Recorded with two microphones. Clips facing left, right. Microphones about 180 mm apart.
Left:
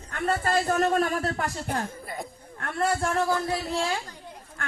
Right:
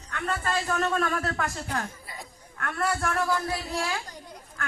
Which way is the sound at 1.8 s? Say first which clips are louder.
Left 5 dB; 55° left (ahead or behind).